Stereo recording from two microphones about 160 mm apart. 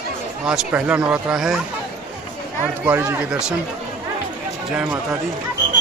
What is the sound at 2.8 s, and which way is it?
Speech, 10° right (ahead or behind).